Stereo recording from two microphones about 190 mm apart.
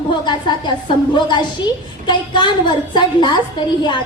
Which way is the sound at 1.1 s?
25° left (ahead or behind).